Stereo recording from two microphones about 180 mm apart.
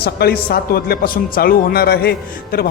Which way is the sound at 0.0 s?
60° left (ahead or behind).